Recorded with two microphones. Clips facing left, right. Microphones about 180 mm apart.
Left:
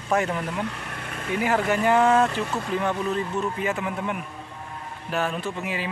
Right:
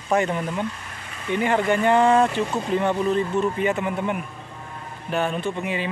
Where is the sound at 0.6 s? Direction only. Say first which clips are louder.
Even; 65° left (ahead or behind).